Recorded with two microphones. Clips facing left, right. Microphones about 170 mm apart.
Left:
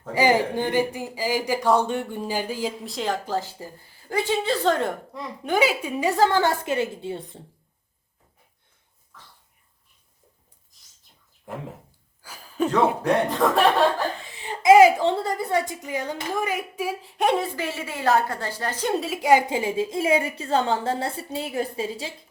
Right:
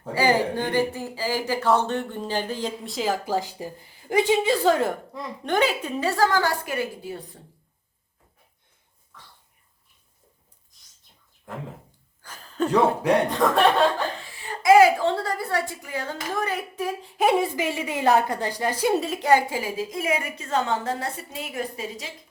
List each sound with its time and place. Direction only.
0.1 s speech: 15° left (ahead or behind)
9.1 s dog: centre (ahead or behind)
12.2 s a sound: 10° left (ahead or behind)
13.2 s a woman's voice: centre (ahead or behind)
14.3 s a woman's voice: 20° left (ahead or behind); by 19.3 s centre (ahead or behind)
19.3 s a woman's voice: 20° left (ahead or behind)